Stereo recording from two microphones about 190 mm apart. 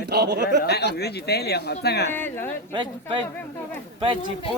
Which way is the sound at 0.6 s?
60° left (ahead or behind).